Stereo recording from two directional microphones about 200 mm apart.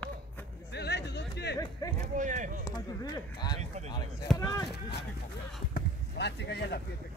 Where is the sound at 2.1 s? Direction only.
40° right (ahead or behind).